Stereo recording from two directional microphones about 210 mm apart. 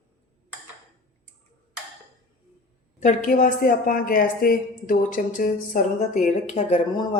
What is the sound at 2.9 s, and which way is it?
A woman's voice, 35° left (ahead or behind).